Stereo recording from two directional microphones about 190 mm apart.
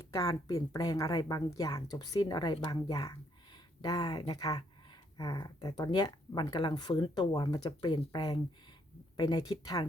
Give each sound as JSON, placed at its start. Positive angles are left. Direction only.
{"t": 0.1, "sound": "speech", "side_deg": 20}